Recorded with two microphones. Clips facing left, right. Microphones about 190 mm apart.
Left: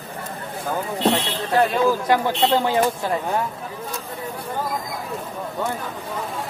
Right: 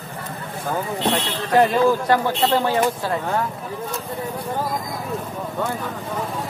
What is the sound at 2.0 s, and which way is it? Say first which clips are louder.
Speech: even; 15° left (ahead or behind).